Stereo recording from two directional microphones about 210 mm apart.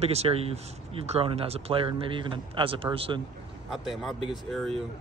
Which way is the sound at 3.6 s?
Centre (ahead or behind).